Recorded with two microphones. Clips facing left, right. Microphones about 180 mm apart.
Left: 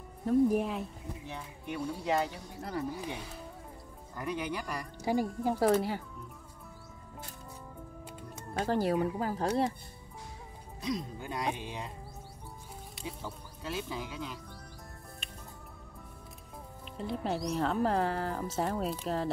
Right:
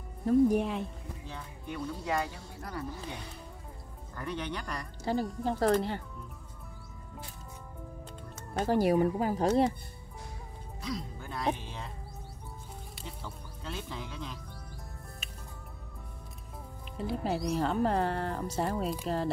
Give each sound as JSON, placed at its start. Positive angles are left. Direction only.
{"t": 0.2, "sound": "speech", "side_deg": 0}
{"t": 1.2, "sound": "speech", "side_deg": 20}
{"t": 4.2, "sound": "speech", "side_deg": 10}
{"t": 8.6, "sound": "speech", "side_deg": -15}
{"t": 10.8, "sound": "speech", "side_deg": 20}
{"t": 12.9, "sound": "music", "side_deg": 5}
{"t": 16.9, "sound": "speech", "side_deg": -5}